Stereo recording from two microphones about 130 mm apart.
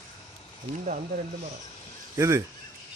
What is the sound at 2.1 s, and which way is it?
Speech, 25° right (ahead or behind).